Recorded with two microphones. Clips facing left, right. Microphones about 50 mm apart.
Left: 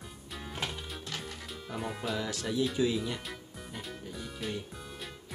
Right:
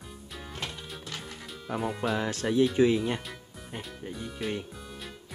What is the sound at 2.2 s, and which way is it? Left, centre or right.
Speech, right.